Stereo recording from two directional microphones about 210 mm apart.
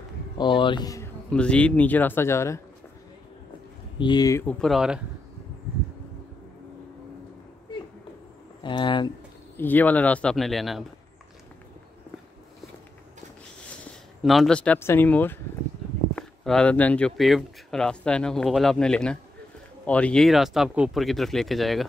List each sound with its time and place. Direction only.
0.4 s speech: 25° left (ahead or behind)
1.3 s speech: 5° left (ahead or behind)
4.0 s speech: 20° left (ahead or behind); by 5.0 s centre (ahead or behind)
8.6 s speech: 20° left (ahead or behind)
9.6 s speech: 10° left (ahead or behind)
14.2 s speech: centre (ahead or behind)